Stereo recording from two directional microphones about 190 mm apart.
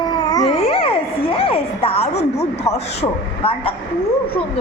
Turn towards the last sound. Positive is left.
turn(degrees=30)  # may be behind; listen again after turning